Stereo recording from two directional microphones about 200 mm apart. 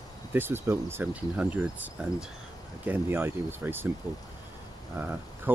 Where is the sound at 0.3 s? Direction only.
10° right (ahead or behind).